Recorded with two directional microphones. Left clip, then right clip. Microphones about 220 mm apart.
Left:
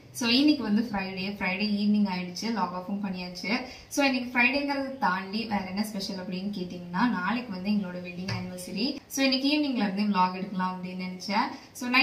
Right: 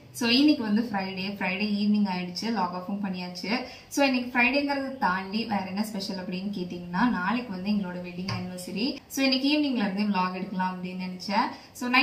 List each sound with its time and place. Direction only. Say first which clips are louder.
0.2 s a woman's voice: right 1 dB; centre (ahead or behind)
8.7 s a woman's voice: even; centre (ahead or behind)